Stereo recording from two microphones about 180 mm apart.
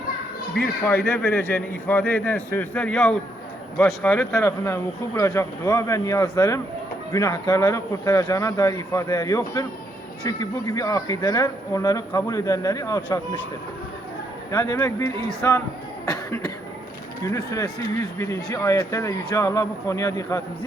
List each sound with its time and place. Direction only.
0.5 s a man's voice: 5° left (ahead or behind)
14.5 s a man's voice: 20° left (ahead or behind)
17.2 s a man's voice: 20° left (ahead or behind)